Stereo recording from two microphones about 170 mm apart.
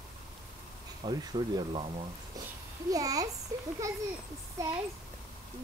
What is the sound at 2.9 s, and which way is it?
A child's voice, 20° right (ahead or behind).